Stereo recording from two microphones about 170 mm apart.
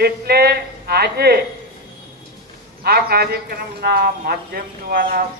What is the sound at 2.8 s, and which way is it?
A man's voice, 70° right (ahead or behind).